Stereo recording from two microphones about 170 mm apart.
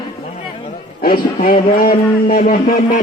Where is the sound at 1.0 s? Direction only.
55° left (ahead or behind).